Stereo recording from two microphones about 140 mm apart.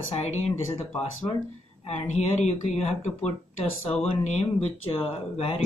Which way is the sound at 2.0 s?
55° left (ahead or behind).